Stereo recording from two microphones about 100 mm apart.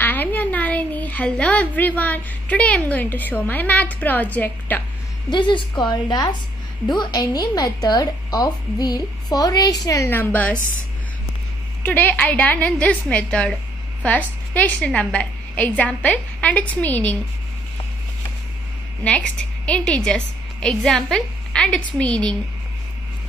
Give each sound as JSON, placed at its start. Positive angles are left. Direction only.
{"t": 0.0, "sound": "a woman's voice", "side_deg": 20}
{"t": 5.3, "sound": "a woman's voice", "side_deg": 50}
{"t": 10.1, "sound": "a woman's voice", "side_deg": 15}
{"t": 11.8, "sound": "a woman's voice", "side_deg": 20}
{"t": 19.0, "sound": "a woman's voice", "side_deg": 10}